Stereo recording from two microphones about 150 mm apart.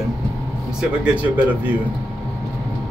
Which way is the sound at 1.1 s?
10° right (ahead or behind).